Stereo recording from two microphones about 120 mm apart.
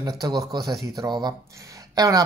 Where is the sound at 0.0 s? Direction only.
35° right (ahead or behind).